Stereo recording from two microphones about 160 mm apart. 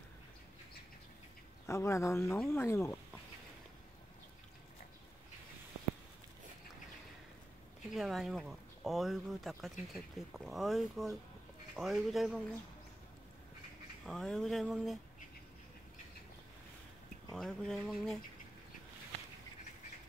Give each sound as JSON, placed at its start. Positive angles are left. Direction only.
{"t": 1.7, "sound": "speech", "side_deg": 15}
{"t": 7.9, "sound": "speech", "side_deg": 0}
{"t": 14.0, "sound": "speech", "side_deg": 5}
{"t": 17.3, "sound": "speech", "side_deg": 5}